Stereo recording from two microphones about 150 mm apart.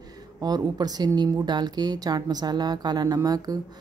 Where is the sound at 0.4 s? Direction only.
25° right (ahead or behind).